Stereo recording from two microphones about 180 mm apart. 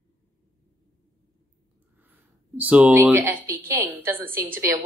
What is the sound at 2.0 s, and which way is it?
A woman's voice, 10° right (ahead or behind).